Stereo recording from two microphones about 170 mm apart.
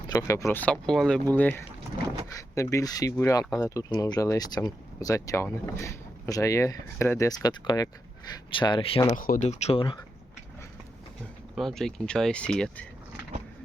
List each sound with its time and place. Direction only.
0.1 s speech: 20° left (ahead or behind)
9.1 s speech: 55° left (ahead or behind); by 10.0 s 30° left (ahead or behind)
11.5 s speech: centre (ahead or behind)